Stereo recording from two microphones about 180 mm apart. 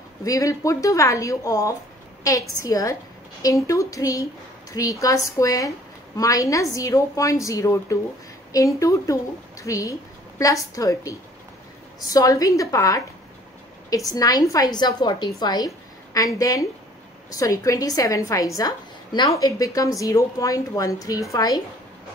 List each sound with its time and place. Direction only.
0.2 s a woman's voice: 20° left (ahead or behind)
14.1 s a woman's voice: 20° left (ahead or behind)